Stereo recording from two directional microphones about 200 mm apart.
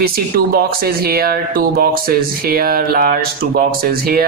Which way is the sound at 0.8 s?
50° right (ahead or behind).